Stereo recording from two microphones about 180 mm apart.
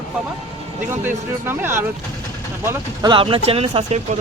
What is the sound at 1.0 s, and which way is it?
Speech, 10° right (ahead or behind).